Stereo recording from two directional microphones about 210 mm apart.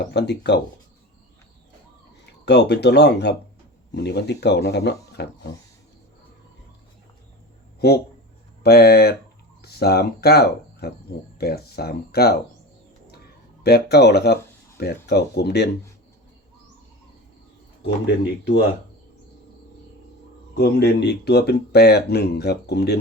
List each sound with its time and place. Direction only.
0.0 s speech: 55° left (ahead or behind)
2.4 s speech: 55° left (ahead or behind)
8.6 s speech: 50° left (ahead or behind)
13.6 s speech: 50° left (ahead or behind)
17.8 s speech: 55° left (ahead or behind)
20.6 s speech: 50° left (ahead or behind)